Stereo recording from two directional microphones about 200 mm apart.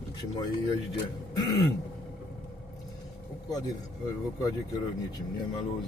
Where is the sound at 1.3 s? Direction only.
20° left (ahead or behind).